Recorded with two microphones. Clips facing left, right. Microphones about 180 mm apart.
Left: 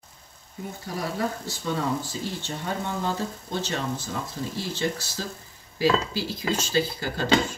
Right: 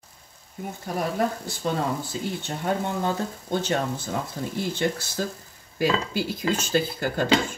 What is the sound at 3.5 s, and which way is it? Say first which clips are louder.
Speech: right 5 dB; 55° right (ahead or behind).